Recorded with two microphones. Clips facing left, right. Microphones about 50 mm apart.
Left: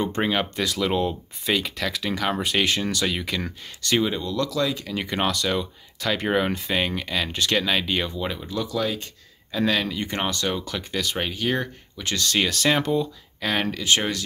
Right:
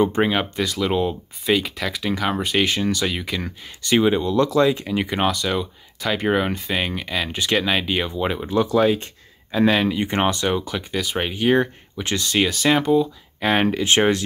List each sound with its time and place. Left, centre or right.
0.0 s speech: centre
5.0 s speech: centre
8.2 s speech: right; by 13.1 s centre
13.4 s speech: right